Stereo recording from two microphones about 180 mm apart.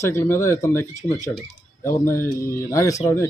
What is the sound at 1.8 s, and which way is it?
Speech, 15° left (ahead or behind).